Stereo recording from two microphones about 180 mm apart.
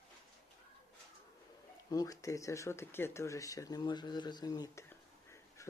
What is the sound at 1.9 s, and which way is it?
Speech, 20° left (ahead or behind).